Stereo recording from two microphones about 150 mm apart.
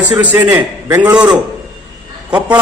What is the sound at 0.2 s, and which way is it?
Speech, 10° right (ahead or behind).